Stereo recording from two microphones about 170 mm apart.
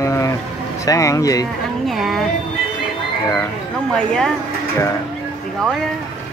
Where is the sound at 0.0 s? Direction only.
20° left (ahead or behind).